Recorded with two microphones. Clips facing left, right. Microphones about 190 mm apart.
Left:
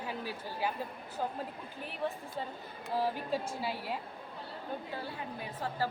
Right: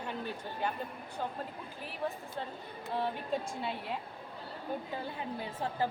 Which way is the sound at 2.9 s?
5° left (ahead or behind).